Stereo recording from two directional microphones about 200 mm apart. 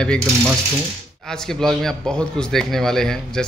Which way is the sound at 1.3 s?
5° left (ahead or behind).